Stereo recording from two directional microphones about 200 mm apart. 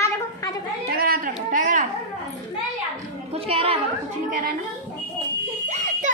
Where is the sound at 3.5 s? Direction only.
30° right (ahead or behind).